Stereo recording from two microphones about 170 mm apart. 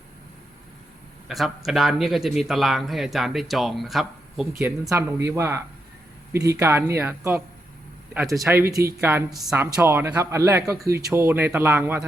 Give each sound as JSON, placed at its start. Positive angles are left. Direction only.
{"t": 1.3, "sound": "a man's voice", "side_deg": 0}
{"t": 4.6, "sound": "speech", "side_deg": -15}